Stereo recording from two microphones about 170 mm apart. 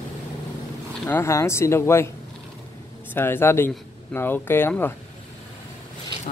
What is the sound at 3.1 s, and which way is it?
Speech, 10° left (ahead or behind).